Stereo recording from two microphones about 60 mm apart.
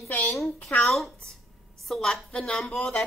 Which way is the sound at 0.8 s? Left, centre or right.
Centre.